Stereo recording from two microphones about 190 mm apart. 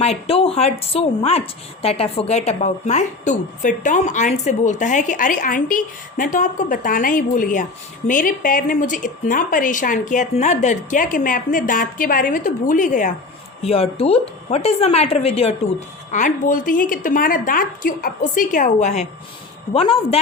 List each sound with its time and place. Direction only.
0.0 s a woman's voice: 30° left (ahead or behind)
13.6 s speech: 30° left (ahead or behind)
16.1 s a woman's voice: 40° left (ahead or behind)